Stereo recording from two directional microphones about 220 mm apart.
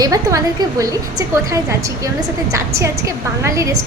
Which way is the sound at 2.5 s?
15° right (ahead or behind).